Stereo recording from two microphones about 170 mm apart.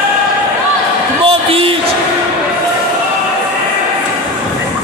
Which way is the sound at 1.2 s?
35° right (ahead or behind).